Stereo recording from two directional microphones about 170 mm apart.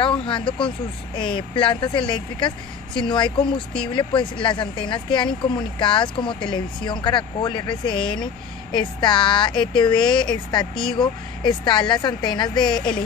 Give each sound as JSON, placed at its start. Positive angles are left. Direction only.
{"t": 0.0, "sound": "speech", "side_deg": 30}